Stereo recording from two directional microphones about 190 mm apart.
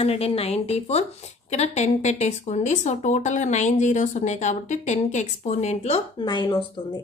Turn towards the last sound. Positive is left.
turn(degrees=25)  # may be behind; listen again after turning